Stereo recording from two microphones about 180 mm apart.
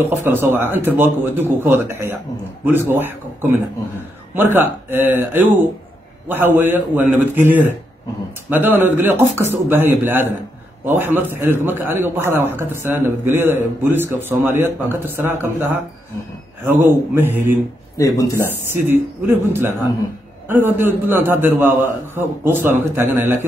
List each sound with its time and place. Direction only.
0.0 s a man's voice: 10° right (ahead or behind)
8.5 s a man's voice: 10° right (ahead or behind)
17.9 s speech: 20° left (ahead or behind)
18.9 s a man's voice: 10° right (ahead or behind)